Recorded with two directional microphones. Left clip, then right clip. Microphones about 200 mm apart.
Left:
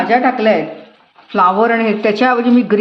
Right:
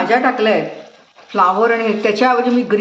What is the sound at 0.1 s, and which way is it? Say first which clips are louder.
Speech: left 2 dB; 15° left (ahead or behind).